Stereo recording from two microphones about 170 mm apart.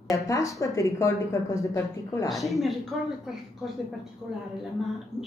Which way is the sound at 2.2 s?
Centre (ahead or behind).